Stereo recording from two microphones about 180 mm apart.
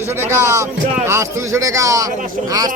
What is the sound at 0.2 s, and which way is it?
A man's voice, 15° right (ahead or behind).